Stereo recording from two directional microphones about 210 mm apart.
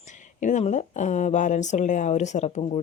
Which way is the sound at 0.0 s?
35° left (ahead or behind).